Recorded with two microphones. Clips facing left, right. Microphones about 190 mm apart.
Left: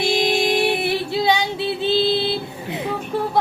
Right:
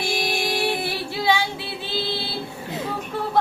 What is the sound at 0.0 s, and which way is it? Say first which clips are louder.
Female singing: left 6 dB; 20° left (ahead or behind).